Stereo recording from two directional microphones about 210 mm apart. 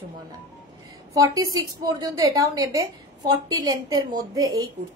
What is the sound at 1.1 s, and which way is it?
A woman's voice, 15° right (ahead or behind).